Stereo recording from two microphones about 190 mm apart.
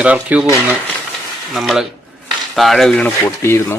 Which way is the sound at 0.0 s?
5° right (ahead or behind).